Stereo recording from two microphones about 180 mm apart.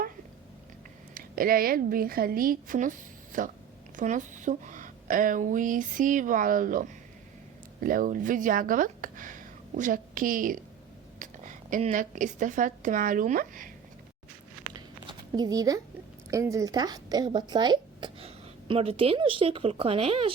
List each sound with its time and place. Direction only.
1.1 s a woman's voice: 55° right (ahead or behind)
15.4 s a woman's voice: 20° right (ahead or behind)